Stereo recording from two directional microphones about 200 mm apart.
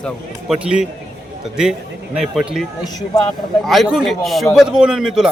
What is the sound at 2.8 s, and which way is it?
Speech, 20° left (ahead or behind).